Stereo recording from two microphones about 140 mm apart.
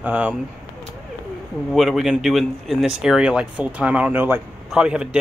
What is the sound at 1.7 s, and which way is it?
Speech, centre (ahead or behind).